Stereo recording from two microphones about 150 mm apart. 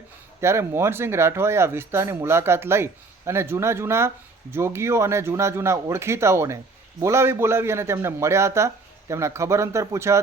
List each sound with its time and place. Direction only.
0.4 s a man's voice: 20° right (ahead or behind)